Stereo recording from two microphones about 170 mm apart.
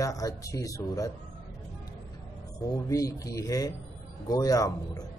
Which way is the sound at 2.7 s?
20° left (ahead or behind).